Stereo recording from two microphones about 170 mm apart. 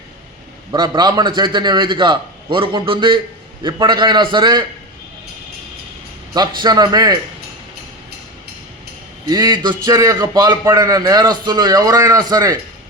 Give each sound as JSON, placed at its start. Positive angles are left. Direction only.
{"t": 0.7, "sound": "a man's voice", "side_deg": -25}
{"t": 6.3, "sound": "a man's voice", "side_deg": -25}
{"t": 9.3, "sound": "a man's voice", "side_deg": -25}